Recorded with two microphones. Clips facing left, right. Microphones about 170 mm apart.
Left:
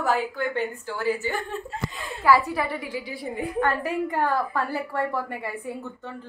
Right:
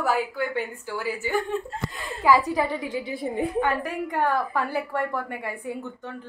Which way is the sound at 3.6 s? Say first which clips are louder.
Left 1 dB; centre (ahead or behind).